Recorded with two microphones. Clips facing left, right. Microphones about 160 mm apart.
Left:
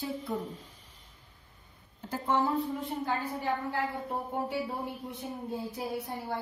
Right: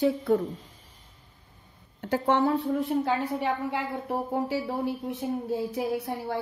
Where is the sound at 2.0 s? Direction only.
75° right (ahead or behind).